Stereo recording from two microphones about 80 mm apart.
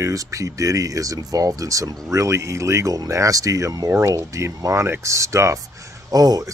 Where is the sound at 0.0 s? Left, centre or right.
Right.